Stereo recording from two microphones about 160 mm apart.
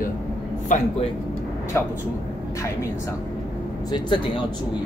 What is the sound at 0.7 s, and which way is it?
Speech, 50° left (ahead or behind).